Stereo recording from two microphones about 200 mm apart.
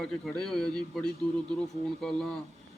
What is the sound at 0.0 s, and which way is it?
A man's voice, centre (ahead or behind).